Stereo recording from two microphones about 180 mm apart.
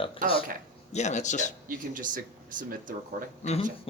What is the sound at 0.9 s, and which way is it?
Speech, 40° left (ahead or behind).